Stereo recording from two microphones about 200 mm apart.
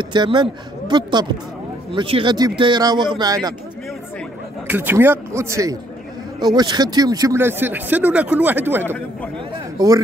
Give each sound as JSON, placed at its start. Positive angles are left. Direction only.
{"t": 0.0, "sound": "speech", "side_deg": -25}
{"t": 4.6, "sound": "speech", "side_deg": -10}
{"t": 8.8, "sound": "speech", "side_deg": 10}